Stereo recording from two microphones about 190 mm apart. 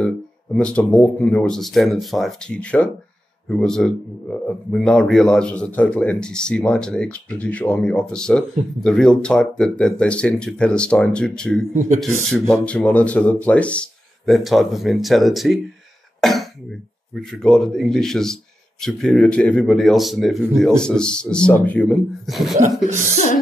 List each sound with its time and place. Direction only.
0.0 s a man's voice: 5° left (ahead or behind)
23.1 s music: 40° left (ahead or behind)